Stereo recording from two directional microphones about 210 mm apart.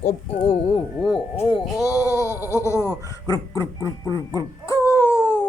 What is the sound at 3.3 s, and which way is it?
Speech, 15° left (ahead or behind).